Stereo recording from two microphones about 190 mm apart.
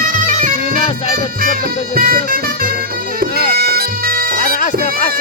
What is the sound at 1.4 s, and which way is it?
Music, 50° right (ahead or behind).